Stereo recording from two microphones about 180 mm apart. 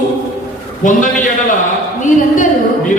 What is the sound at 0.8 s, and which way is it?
Speech, 45° left (ahead or behind).